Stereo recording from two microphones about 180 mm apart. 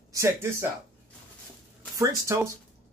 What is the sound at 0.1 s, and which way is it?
Speech, 15° right (ahead or behind).